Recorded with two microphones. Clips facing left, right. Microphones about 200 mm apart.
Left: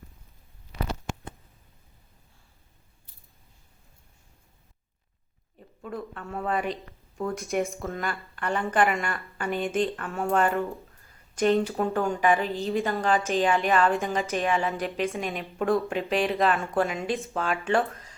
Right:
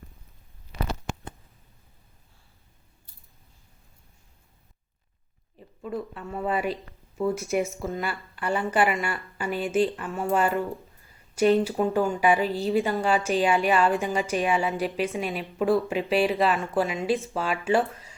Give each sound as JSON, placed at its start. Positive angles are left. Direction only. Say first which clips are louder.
{"t": 5.8, "sound": "a woman's voice", "louder": "right 3 dB", "side_deg": 0}
{"t": 12.5, "sound": "a woman's voice", "louder": "right 3 dB", "side_deg": -35}
{"t": 12.7, "sound": "a woman's voice", "louder": "even", "side_deg": -10}